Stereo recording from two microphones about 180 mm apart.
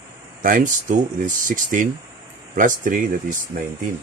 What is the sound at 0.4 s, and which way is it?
Speech, 50° right (ahead or behind).